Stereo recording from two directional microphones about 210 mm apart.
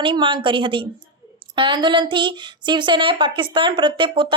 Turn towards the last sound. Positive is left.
turn(degrees=-25)  # may be behind; listen again after turning